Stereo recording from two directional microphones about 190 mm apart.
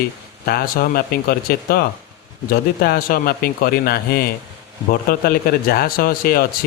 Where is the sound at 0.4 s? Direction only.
55° left (ahead or behind).